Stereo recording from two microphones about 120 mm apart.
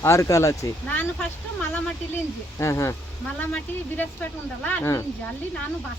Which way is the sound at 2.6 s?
25° left (ahead or behind).